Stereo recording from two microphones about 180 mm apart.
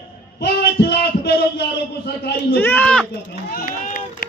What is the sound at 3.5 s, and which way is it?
Run, 50° left (ahead or behind).